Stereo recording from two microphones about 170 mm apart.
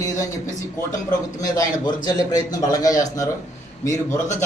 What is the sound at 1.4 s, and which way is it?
A man's voice, 25° left (ahead or behind).